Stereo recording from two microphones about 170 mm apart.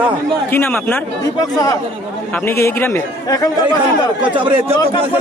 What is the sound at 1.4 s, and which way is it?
A man's voice, 20° left (ahead or behind).